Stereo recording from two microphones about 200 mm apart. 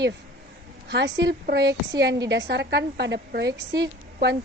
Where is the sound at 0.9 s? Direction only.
60° right (ahead or behind).